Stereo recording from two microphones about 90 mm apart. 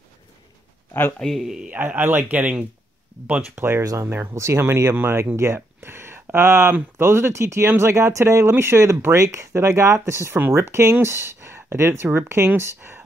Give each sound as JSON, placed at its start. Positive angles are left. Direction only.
{"t": 1.2, "sound": "a man's voice", "side_deg": 0}
{"t": 1.7, "sound": "speech", "side_deg": -20}
{"t": 3.8, "sound": "speech", "side_deg": -40}
{"t": 4.1, "sound": "speech", "side_deg": -30}